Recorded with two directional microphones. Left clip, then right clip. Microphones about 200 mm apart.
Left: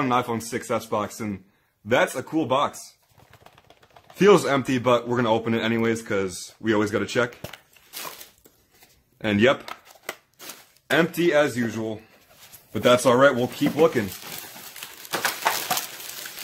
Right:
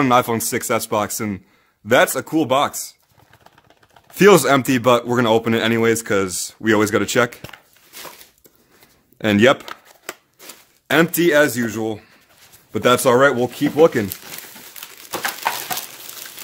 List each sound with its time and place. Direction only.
0.0 s speech: 65° right (ahead or behind)
4.2 s speech: 65° right (ahead or behind)
9.2 s speech: 65° right (ahead or behind)
10.9 s speech: 65° right (ahead or behind)